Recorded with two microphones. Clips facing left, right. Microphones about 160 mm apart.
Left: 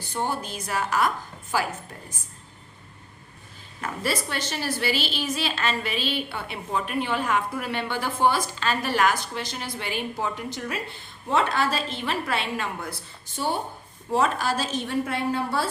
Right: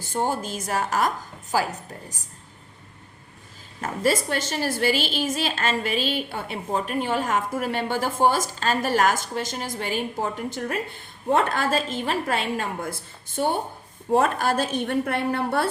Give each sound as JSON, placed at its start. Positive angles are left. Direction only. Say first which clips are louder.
{"t": 0.0, "sound": "a woman's voice", "louder": "right 3 dB", "side_deg": -45}
{"t": 3.8, "sound": "a woman's voice", "louder": "right 5 dB", "side_deg": -45}